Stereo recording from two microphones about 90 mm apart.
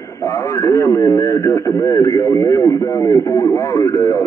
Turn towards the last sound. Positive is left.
turn(degrees=35)  # may be behind; listen again after turning